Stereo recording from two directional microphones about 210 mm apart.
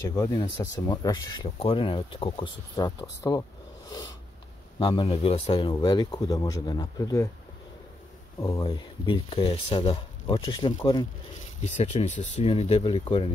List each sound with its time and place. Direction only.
0.1 s speech: 15° left (ahead or behind)
4.7 s speech: 25° left (ahead or behind)
8.5 s speech: 25° left (ahead or behind)
11.8 s speech: 30° left (ahead or behind)